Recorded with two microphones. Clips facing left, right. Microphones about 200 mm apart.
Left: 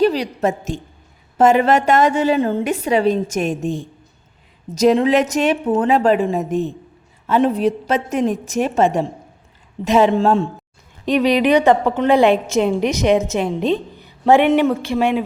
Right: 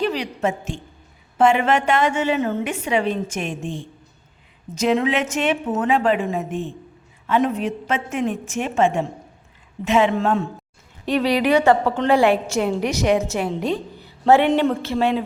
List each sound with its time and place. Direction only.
0.0 s a woman's voice: 35° left (ahead or behind)
11.0 s a woman's voice: 20° left (ahead or behind)